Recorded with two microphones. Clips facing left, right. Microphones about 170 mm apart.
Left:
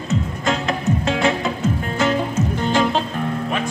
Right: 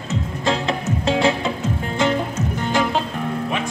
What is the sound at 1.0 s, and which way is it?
Music, 30° right (ahead or behind).